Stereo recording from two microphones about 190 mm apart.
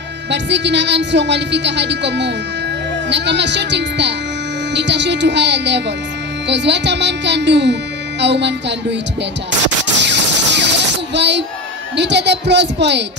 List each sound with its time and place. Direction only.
0.3 s a woman's voice: 65° right (ahead or behind)
9.9 s a sound: 65° right (ahead or behind)
11.1 s a child's voice: 65° right (ahead or behind)